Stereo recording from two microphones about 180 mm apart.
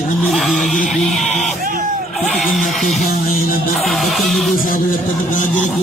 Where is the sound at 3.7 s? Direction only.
Centre (ahead or behind).